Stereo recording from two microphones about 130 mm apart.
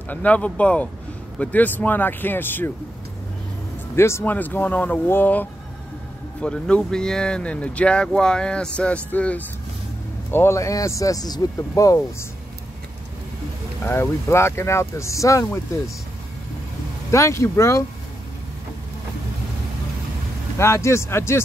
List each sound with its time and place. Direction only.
0.1 s speech: 10° left (ahead or behind)
3.9 s speech: 20° left (ahead or behind)
10.3 s speech: 20° left (ahead or behind)
13.8 s speech: 20° left (ahead or behind)
17.1 s speech: 20° left (ahead or behind)
20.5 s speech: 20° left (ahead or behind)